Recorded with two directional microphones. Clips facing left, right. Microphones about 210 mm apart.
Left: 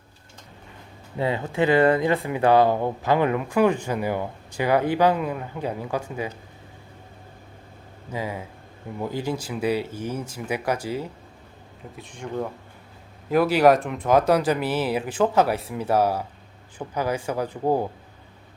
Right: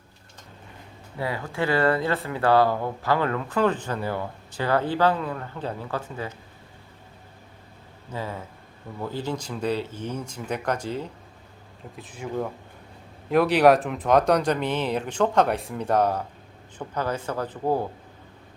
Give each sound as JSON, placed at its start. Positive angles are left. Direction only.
{"t": 1.1, "sound": "speech", "side_deg": 20}
{"t": 8.1, "sound": "speech", "side_deg": 10}
{"t": 11.9, "sound": "speech", "side_deg": -5}